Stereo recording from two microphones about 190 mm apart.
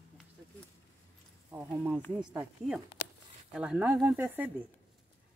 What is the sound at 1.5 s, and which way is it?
Speech, 10° right (ahead or behind).